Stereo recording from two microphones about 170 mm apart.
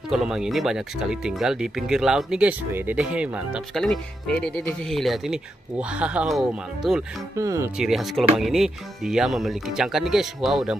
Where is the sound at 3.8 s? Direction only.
5° left (ahead or behind).